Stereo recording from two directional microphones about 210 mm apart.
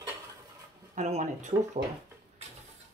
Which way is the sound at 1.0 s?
35° right (ahead or behind).